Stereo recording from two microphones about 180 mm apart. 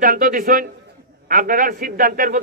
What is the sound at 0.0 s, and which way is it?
A man's voice, 50° right (ahead or behind).